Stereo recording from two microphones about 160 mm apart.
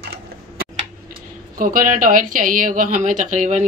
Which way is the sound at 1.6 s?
60° right (ahead or behind).